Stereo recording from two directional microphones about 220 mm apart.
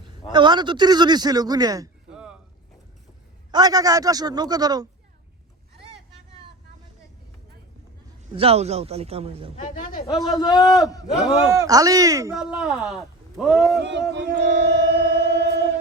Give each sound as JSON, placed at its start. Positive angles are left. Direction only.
{"t": 0.3, "sound": "a man's voice", "side_deg": -20}
{"t": 2.0, "sound": "a sound", "side_deg": -5}
{"t": 3.5, "sound": "speech", "side_deg": -15}
{"t": 8.4, "sound": "a man's voice", "side_deg": -30}
{"t": 9.6, "sound": "speech", "side_deg": 35}
{"t": 10.3, "sound": "a man's voice", "side_deg": 20}
{"t": 11.6, "sound": "speech", "side_deg": -15}
{"t": 12.4, "sound": "a man's voice", "side_deg": 0}
{"t": 13.7, "sound": "speech", "side_deg": -55}
{"t": 14.1, "sound": "music", "side_deg": -55}